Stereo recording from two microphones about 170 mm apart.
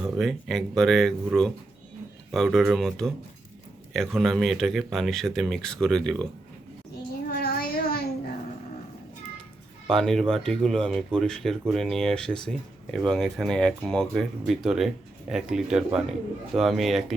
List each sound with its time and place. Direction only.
0.0 s speech: centre (ahead or behind)
7.3 s a sound: 60° left (ahead or behind)
9.8 s speech: centre (ahead or behind)